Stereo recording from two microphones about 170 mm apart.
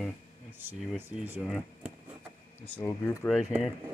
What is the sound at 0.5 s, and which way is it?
Speech, 10° right (ahead or behind).